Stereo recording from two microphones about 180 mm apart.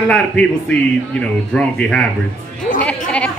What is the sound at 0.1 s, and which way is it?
Speech, 5° left (ahead or behind).